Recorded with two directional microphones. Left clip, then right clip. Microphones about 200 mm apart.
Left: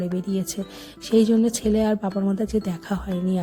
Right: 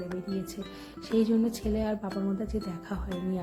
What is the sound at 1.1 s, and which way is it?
Speech, 40° left (ahead or behind).